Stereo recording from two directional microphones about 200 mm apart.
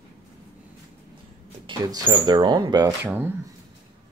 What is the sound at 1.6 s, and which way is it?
Speech, 20° right (ahead or behind).